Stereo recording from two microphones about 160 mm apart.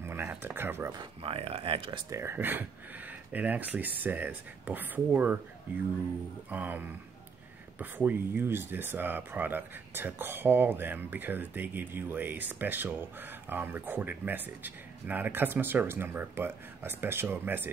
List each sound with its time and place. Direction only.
0.0 s a sound: 15° right (ahead or behind)
0.9 s speech: 35° right (ahead or behind); by 5.4 s 10° right (ahead or behind)
6.5 s speech: 10° right (ahead or behind)
7.8 s speech: 10° right (ahead or behind)